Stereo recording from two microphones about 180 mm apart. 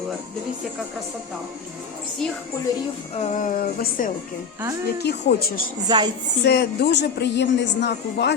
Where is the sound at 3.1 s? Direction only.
40° left (ahead or behind).